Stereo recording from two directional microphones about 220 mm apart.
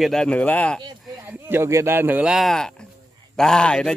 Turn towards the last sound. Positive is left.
turn(degrees=5)  # may be behind; listen again after turning